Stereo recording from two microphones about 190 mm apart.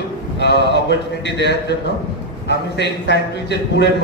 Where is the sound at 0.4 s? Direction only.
65° left (ahead or behind).